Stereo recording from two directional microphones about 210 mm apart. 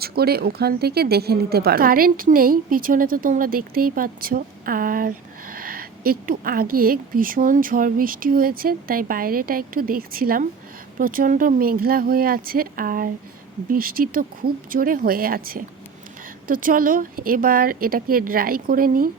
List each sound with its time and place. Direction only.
0.0 s speech: 45° right (ahead or behind)